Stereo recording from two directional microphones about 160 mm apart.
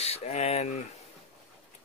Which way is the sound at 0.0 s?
40° left (ahead or behind).